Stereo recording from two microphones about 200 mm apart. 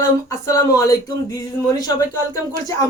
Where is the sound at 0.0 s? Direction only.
15° left (ahead or behind).